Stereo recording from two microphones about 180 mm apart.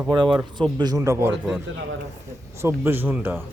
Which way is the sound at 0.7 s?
20° right (ahead or behind).